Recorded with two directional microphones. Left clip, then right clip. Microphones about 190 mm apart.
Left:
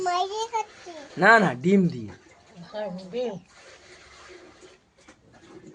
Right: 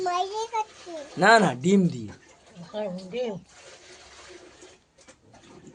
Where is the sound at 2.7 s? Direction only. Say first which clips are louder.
Even; 25° right (ahead or behind).